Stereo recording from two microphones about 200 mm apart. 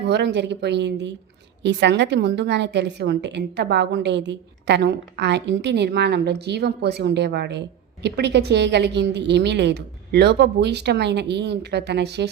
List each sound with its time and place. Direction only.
0.0 s a woman's voice: 55° right (ahead or behind)